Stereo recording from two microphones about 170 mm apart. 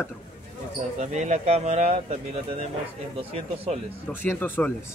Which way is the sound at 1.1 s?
45° right (ahead or behind).